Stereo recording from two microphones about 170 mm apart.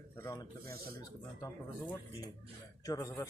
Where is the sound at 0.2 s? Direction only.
15° left (ahead or behind).